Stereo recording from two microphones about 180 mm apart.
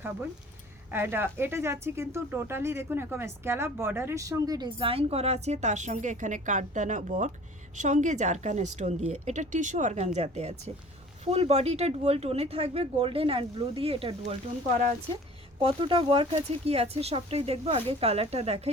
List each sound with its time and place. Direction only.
0.9 s a woman's voice: 15° right (ahead or behind); by 14.2 s 30° right (ahead or behind)
15.6 s speech: 30° right (ahead or behind)